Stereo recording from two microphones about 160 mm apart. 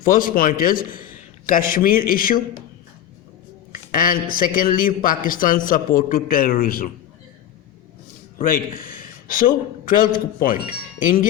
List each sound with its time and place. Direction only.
0.0 s a man's voice: 60° left (ahead or behind)
3.7 s speech: 60° left (ahead or behind)
8.4 s a man's voice: 60° left (ahead or behind)